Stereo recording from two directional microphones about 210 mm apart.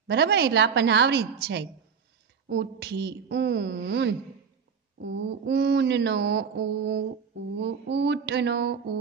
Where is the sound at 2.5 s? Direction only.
55° right (ahead or behind).